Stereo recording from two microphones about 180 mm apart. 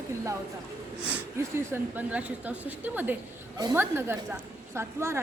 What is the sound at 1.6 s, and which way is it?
A woman's voice, 15° right (ahead or behind).